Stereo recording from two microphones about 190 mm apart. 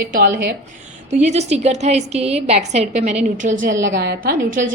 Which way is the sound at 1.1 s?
35° right (ahead or behind).